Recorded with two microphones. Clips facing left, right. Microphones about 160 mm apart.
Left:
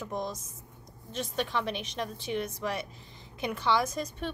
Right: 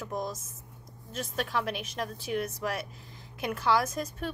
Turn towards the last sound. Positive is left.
turn(degrees=-5)  # may be behind; listen again after turning